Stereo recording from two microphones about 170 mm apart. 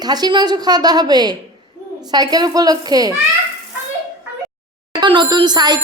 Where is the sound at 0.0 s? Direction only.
25° right (ahead or behind).